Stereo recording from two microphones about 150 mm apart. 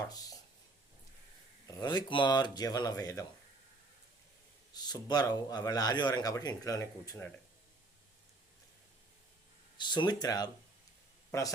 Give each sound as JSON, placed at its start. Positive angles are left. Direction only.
{"t": 0.0, "sound": "a sound", "side_deg": 25}
{"t": 1.6, "sound": "a man's voice", "side_deg": 25}
{"t": 4.7, "sound": "a man's voice", "side_deg": 25}
{"t": 9.7, "sound": "a man's voice", "side_deg": 30}